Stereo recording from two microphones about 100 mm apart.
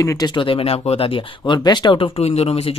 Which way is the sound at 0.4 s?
60° left (ahead or behind).